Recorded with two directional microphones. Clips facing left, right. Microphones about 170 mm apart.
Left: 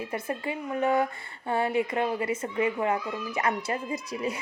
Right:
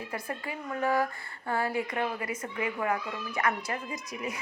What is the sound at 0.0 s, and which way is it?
A child's voice, 25° left (ahead or behind).